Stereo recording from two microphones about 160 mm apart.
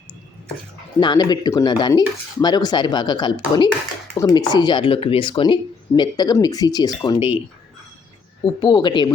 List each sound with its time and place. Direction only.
0.9 s speech: 30° left (ahead or behind)
8.6 s speech: 25° left (ahead or behind)